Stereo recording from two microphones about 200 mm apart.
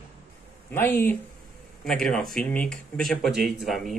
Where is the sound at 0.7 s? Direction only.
10° left (ahead or behind).